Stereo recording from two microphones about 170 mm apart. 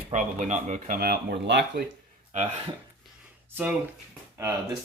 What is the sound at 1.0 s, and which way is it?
Speech, 70° right (ahead or behind).